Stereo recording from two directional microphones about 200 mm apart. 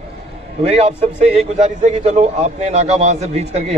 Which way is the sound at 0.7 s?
35° right (ahead or behind).